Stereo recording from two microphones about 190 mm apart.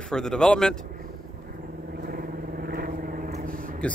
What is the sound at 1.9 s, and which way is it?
Vehicle, 50° right (ahead or behind).